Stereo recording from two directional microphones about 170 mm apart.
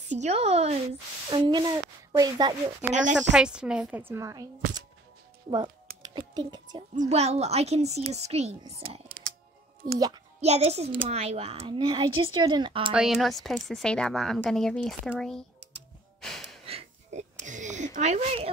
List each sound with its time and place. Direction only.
0.1 s a child's voice: 40° right (ahead or behind)
1.3 s speech: 25° right (ahead or behind)
2.9 s a woman's voice: 45° right (ahead or behind)
3.3 s a woman's voice: 5° right (ahead or behind)
6.0 s a child's voice: 25° right (ahead or behind)
7.0 s a child's voice: 40° right (ahead or behind)
9.9 s speech: 25° right (ahead or behind)
10.4 s a child's voice: 40° right (ahead or behind)
12.9 s speech: centre (ahead or behind)
16.2 s gasp: centre (ahead or behind)
16.6 s a sound: 40° right (ahead or behind)